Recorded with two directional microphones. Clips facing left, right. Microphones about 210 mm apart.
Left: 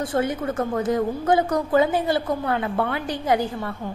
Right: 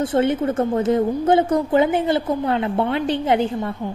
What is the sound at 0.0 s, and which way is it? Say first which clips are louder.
A woman's voice: right 5 dB; 25° right (ahead or behind).